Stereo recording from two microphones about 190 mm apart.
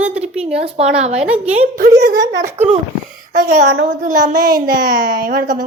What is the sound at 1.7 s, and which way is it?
Speech, 50° right (ahead or behind).